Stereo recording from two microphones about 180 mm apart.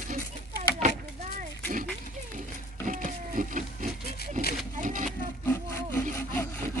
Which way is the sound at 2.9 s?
45° right (ahead or behind).